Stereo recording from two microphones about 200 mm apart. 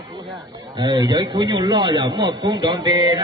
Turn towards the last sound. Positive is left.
turn(degrees=-20)  # may be behind; listen again after turning